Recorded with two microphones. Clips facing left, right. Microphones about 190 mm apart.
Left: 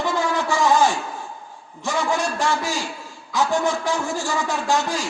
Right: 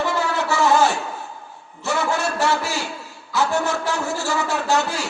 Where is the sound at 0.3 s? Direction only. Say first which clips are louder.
Right 1 dB; 70° right (ahead or behind).